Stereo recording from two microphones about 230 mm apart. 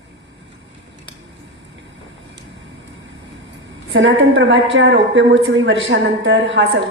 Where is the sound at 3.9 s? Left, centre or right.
Right.